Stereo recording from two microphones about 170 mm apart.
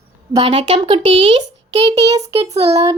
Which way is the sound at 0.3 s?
30° right (ahead or behind).